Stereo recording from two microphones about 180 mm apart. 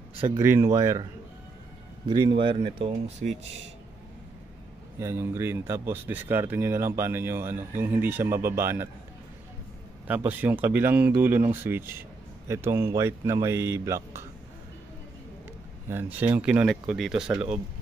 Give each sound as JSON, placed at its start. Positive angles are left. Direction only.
{"t": 0.4, "sound": "speech", "side_deg": -15}
{"t": 2.0, "sound": "speech", "side_deg": -25}
{"t": 4.9, "sound": "speech", "side_deg": -15}
{"t": 10.0, "sound": "speech", "side_deg": -10}
{"t": 15.9, "sound": "speech", "side_deg": -10}